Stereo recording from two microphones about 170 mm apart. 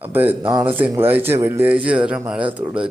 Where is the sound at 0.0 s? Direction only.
10° right (ahead or behind).